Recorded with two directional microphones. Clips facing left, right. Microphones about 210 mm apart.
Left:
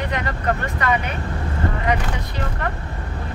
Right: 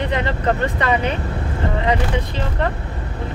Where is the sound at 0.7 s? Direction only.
30° right (ahead or behind).